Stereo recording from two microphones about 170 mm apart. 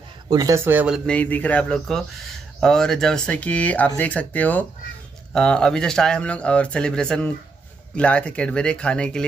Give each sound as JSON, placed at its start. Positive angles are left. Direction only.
{"t": 0.3, "sound": "speech", "side_deg": -20}
{"t": 0.7, "sound": "speech", "side_deg": -10}
{"t": 1.0, "sound": "speech", "side_deg": 10}